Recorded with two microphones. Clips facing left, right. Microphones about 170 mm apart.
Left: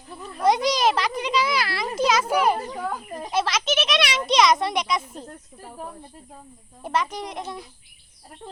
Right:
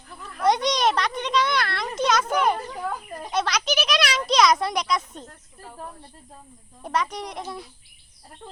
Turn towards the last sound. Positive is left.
turn(degrees=0)  # may be behind; listen again after turning